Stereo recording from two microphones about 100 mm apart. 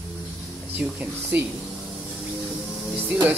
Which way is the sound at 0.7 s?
15° right (ahead or behind).